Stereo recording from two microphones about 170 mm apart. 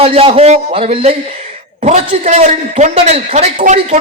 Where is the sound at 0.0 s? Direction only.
35° right (ahead or behind).